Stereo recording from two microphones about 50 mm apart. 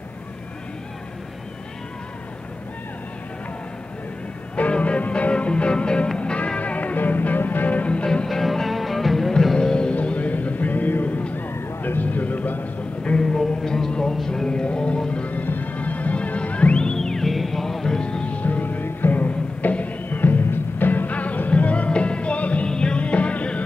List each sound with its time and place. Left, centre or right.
4.6 s music: left
8.3 s music: centre
9.9 s music: left
11.8 s a sound: left
13.6 s music: centre; by 16.7 s left
16.7 s music: centre